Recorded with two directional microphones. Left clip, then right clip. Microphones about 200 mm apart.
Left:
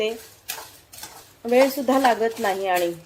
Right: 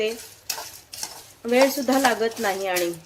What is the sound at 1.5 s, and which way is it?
Speech, centre (ahead or behind).